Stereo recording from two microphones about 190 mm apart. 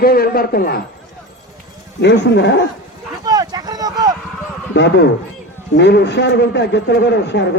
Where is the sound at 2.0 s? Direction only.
65° left (ahead or behind).